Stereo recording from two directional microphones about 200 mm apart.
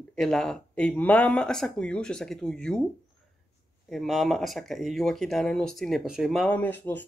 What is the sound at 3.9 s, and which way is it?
Speech, centre (ahead or behind).